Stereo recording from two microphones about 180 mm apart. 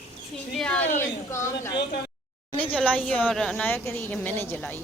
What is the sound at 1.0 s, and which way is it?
A woman's voice, 15° left (ahead or behind).